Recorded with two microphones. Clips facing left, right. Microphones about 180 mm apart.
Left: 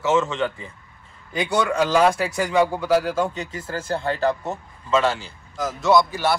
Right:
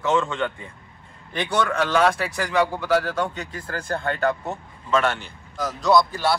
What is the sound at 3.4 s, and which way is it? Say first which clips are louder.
Speech: left 2 dB; 25° left (ahead or behind).